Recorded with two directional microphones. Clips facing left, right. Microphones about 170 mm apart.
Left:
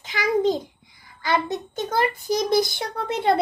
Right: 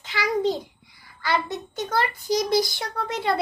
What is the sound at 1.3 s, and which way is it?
Child singing, 20° left (ahead or behind).